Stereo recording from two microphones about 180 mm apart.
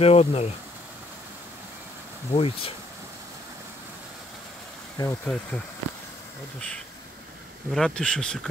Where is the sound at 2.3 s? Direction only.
30° left (ahead or behind).